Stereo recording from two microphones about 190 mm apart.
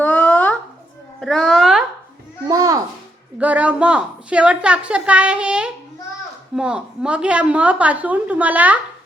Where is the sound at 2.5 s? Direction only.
20° right (ahead or behind).